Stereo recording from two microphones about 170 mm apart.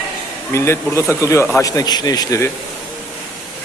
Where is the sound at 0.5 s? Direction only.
15° left (ahead or behind).